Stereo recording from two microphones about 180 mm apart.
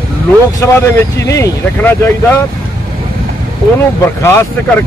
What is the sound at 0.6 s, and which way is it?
Speech, 15° left (ahead or behind).